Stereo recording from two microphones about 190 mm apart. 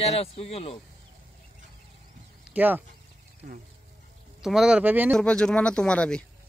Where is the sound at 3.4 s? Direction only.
50° right (ahead or behind).